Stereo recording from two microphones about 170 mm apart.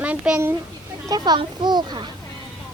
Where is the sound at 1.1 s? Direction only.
25° right (ahead or behind).